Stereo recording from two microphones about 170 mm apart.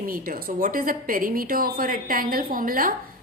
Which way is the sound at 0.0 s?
55° right (ahead or behind).